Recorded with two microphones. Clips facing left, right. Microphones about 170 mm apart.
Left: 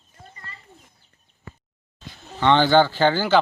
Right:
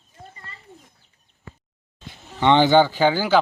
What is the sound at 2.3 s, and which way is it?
Speech, 15° right (ahead or behind).